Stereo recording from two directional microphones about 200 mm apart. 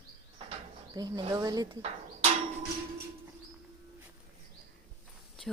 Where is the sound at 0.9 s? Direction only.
20° right (ahead or behind).